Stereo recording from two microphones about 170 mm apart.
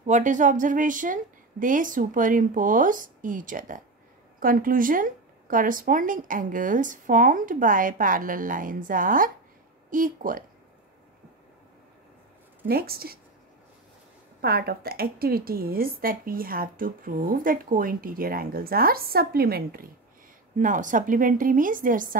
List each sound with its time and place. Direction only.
0.0 s speech: 45° right (ahead or behind)
12.6 s a woman's voice: 65° right (ahead or behind)
14.4 s a woman's voice: 65° right (ahead or behind)
20.5 s speech: 50° right (ahead or behind)